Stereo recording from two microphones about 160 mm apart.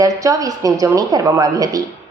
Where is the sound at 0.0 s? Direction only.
20° right (ahead or behind).